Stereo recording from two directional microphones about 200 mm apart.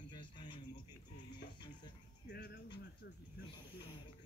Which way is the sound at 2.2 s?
55° left (ahead or behind).